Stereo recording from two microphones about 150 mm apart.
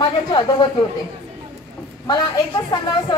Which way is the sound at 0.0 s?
30° left (ahead or behind).